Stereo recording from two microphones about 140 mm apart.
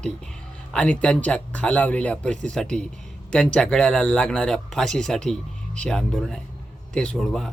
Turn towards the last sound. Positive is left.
turn(degrees=5)  # may be behind; listen again after turning